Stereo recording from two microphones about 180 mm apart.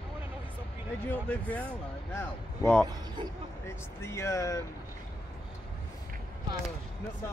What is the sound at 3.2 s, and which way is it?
Speech, 25° right (ahead or behind).